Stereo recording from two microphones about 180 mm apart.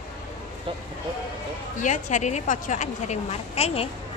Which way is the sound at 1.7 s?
45° left (ahead or behind).